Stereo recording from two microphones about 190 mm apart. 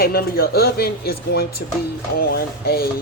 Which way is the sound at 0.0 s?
55° left (ahead or behind).